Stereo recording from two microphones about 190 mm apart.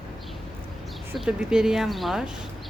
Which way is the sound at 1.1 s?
5° right (ahead or behind).